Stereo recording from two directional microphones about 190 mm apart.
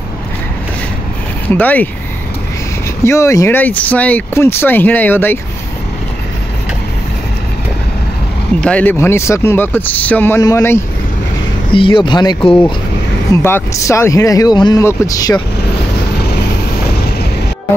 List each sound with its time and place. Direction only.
1.5 s speech: 10° left (ahead or behind)
3.0 s speech: 15° left (ahead or behind)
8.5 s speech: 5° left (ahead or behind)
11.7 s speech: 25° left (ahead or behind)
13.3 s speech: 10° left (ahead or behind)